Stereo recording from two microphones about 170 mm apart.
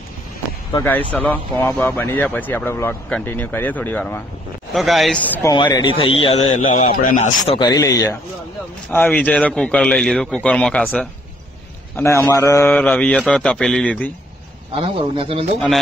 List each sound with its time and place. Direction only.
0.8 s speech: 10° left (ahead or behind)
4.7 s a man's voice: centre (ahead or behind)
5.5 s a man's voice: 25° left (ahead or behind)
6.9 s speech: 50° left (ahead or behind)
7.4 s a man's voice: 25° left (ahead or behind); by 14.1 s 10° left (ahead or behind)
14.8 s a man's voice: 35° right (ahead or behind)